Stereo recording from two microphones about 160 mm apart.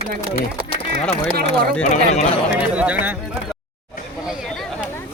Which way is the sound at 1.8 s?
45° left (ahead or behind).